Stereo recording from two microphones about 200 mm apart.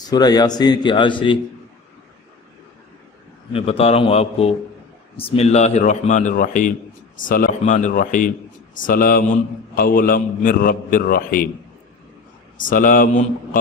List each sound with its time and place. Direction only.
0.1 s speech: 20° left (ahead or behind)
3.5 s a man's voice: 30° left (ahead or behind); by 11.4 s 45° left (ahead or behind)
12.5 s a man's voice: 40° left (ahead or behind)